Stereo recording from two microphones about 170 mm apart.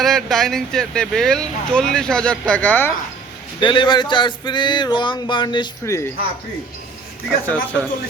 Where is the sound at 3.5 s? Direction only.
30° left (ahead or behind).